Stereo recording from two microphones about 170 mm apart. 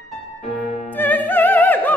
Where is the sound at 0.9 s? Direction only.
10° left (ahead or behind).